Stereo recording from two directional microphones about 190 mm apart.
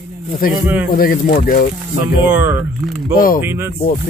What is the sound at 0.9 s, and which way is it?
Speech, 50° left (ahead or behind).